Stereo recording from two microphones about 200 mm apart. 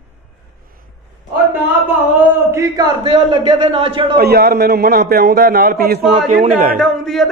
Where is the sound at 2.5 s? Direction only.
15° right (ahead or behind).